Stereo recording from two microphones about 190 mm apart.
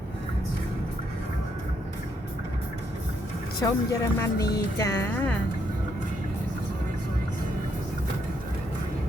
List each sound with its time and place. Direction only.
3.6 s speech: 15° left (ahead or behind)